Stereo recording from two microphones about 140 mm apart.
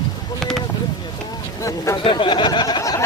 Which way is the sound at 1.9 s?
35° left (ahead or behind).